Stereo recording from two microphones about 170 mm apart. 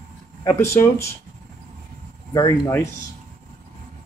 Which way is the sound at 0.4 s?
15° left (ahead or behind).